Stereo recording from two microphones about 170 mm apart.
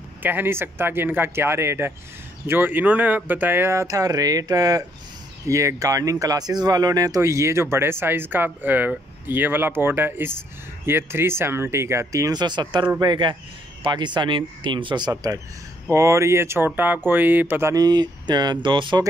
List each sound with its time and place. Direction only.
0.2 s speech: 10° right (ahead or behind); by 19.0 s 25° right (ahead or behind)